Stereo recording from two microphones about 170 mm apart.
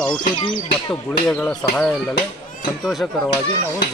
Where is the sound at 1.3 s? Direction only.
5° left (ahead or behind).